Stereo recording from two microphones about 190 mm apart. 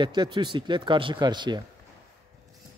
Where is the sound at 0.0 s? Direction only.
25° right (ahead or behind).